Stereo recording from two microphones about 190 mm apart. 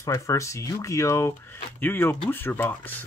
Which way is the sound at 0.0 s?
15° left (ahead or behind).